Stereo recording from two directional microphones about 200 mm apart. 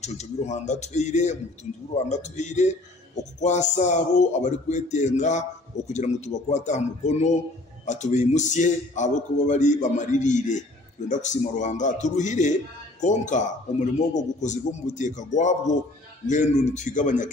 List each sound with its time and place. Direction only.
0.0 s speech: 35° left (ahead or behind)